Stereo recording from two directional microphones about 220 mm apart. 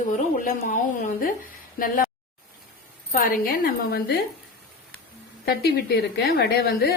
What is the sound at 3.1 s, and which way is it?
A woman's voice, 40° left (ahead or behind).